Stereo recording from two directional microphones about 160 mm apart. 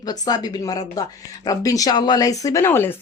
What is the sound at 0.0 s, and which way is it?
Speech, 25° left (ahead or behind).